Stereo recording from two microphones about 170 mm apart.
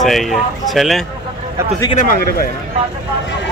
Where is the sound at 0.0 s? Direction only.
Centre (ahead or behind).